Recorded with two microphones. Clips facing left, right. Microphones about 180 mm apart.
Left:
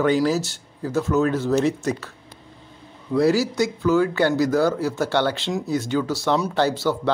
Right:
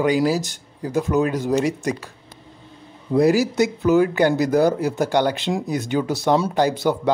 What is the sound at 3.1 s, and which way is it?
Speech, 15° right (ahead or behind).